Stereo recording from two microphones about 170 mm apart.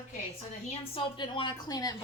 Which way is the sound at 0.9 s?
30° left (ahead or behind).